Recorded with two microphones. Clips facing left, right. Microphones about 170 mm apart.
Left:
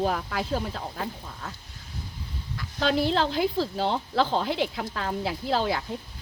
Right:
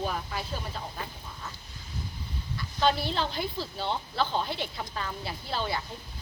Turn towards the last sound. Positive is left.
turn(degrees=90)